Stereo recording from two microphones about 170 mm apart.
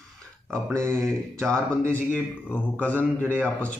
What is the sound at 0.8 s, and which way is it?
A man's voice, 5° left (ahead or behind).